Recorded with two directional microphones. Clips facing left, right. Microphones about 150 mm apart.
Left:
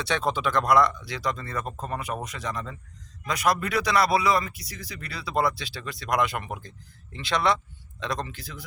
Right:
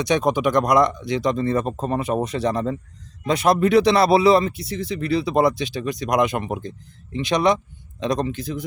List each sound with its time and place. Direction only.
0.0 s speech: 15° right (ahead or behind)